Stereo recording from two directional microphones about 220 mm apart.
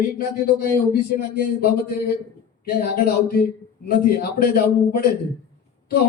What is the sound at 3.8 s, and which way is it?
Speech, 45° left (ahead or behind).